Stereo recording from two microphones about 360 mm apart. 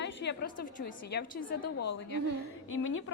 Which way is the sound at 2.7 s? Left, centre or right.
Left.